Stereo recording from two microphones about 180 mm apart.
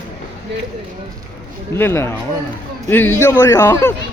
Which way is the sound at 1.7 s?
15° left (ahead or behind).